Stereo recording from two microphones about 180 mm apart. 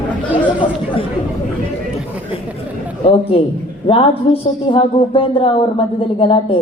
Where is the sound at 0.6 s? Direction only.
30° left (ahead or behind).